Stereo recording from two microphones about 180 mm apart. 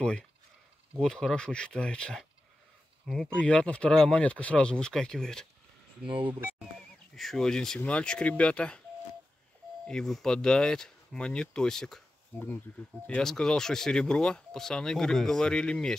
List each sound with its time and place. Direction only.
1.0 s speech: 5° left (ahead or behind)
6.0 s speech: 30° right (ahead or behind)
7.2 s speech: centre (ahead or behind)
9.8 s speech: 5° left (ahead or behind)